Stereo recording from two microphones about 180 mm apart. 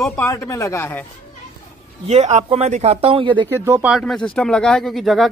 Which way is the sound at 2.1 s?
40° right (ahead or behind).